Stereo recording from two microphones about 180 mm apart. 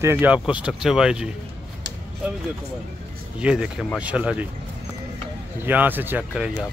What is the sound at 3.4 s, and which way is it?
Speech, 5° right (ahead or behind).